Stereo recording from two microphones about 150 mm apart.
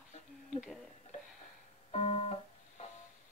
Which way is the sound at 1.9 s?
45° left (ahead or behind).